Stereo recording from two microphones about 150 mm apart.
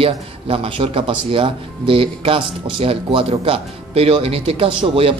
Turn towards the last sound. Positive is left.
turn(degrees=-35)  # may be behind; listen again after turning